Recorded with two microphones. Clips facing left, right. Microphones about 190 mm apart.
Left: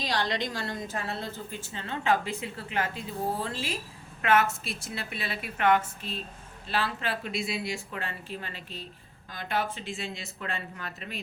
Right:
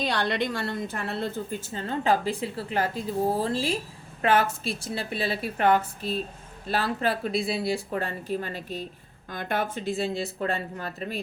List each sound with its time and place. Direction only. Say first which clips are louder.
0.0 s a woman's voice: right 4 dB; 55° right (ahead or behind)
1.7 s speech: right 3 dB; 40° right (ahead or behind)